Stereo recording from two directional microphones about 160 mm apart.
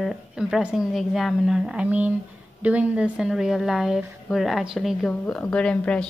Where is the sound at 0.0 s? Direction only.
Centre (ahead or behind).